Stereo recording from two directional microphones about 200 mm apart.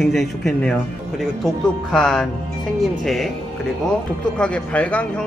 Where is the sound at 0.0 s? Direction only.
Centre (ahead or behind).